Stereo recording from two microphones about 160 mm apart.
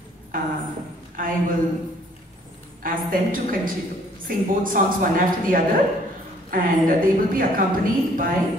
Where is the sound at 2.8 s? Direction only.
60° right (ahead or behind).